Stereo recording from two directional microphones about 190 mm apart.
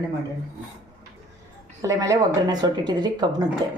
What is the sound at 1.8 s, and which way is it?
A woman's voice, 20° right (ahead or behind).